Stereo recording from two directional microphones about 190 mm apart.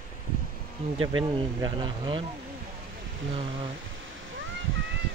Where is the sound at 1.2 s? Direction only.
25° right (ahead or behind).